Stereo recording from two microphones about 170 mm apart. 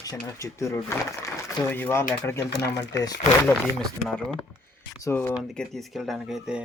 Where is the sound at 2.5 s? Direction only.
85° left.